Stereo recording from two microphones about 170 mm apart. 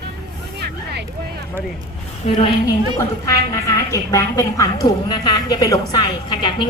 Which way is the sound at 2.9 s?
20° left (ahead or behind).